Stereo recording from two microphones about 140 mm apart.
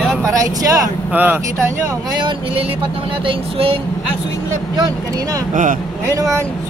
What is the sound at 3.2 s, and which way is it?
Speech, 40° right (ahead or behind).